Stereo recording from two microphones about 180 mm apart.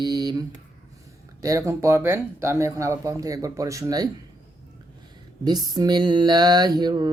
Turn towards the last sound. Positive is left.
turn(degrees=-20)  # may be behind; listen again after turning